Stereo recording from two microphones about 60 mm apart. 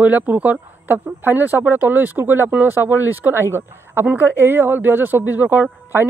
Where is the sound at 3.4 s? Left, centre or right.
Right.